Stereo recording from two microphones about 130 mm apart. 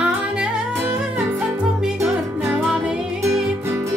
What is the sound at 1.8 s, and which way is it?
Music, 5° right (ahead or behind).